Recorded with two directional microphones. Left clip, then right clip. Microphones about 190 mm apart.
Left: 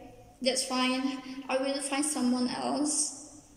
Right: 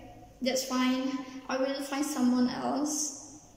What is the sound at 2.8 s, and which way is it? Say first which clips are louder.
Speech: even; 25° left (ahead or behind).